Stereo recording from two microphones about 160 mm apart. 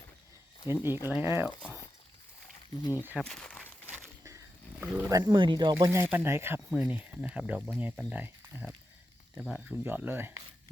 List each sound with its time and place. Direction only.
0.7 s speech: 15° right (ahead or behind)
3.2 s speech: 5° left (ahead or behind)
4.8 s speech: 10° right (ahead or behind)
5.1 s speech: 25° right (ahead or behind)
5.7 s speech: 15° right (ahead or behind)